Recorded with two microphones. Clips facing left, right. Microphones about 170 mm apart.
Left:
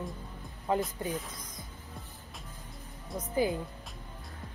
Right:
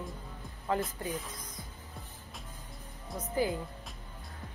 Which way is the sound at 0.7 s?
20° left (ahead or behind).